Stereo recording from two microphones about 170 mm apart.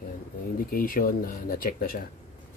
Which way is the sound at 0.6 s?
60° left (ahead or behind).